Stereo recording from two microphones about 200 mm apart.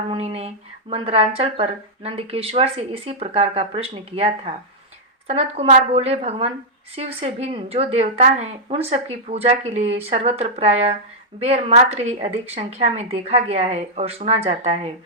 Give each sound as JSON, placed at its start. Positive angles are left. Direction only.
{"t": 0.1, "sound": "a woman's voice", "side_deg": -30}